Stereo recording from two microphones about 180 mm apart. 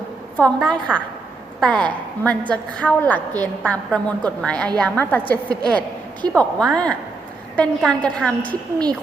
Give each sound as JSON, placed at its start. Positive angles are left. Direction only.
{"t": 0.3, "sound": "a woman's voice", "side_deg": 5}
{"t": 8.4, "sound": "a woman's voice", "side_deg": -25}